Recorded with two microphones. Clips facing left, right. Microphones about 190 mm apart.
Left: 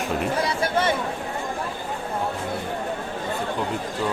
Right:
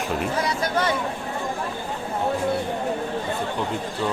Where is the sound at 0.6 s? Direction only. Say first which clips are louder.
Left 2 dB; 25° left (ahead or behind).